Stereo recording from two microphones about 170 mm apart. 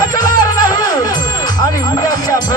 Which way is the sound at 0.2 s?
20° left (ahead or behind).